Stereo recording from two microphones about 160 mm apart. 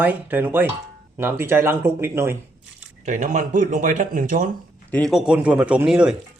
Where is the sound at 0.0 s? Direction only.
10° right (ahead or behind).